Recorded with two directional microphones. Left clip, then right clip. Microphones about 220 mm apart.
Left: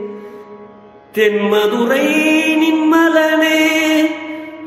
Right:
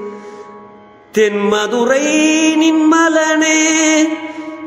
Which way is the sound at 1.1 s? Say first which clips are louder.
Even; 40° right (ahead or behind).